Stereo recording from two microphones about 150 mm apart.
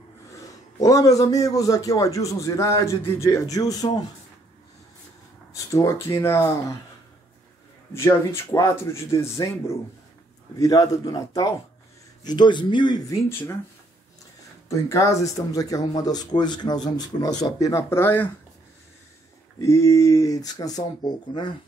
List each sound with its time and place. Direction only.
0.5 s speech: 20° left (ahead or behind)
5.7 s speech: 20° left (ahead or behind)
7.9 s speech: 15° left (ahead or behind)
13.3 s speech: 15° left (ahead or behind)
14.7 s speech: 20° left (ahead or behind)
19.6 s speech: 20° left (ahead or behind)